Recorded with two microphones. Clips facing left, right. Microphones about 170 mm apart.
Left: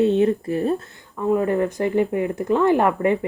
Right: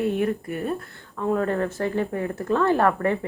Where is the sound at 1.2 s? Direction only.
10° left (ahead or behind).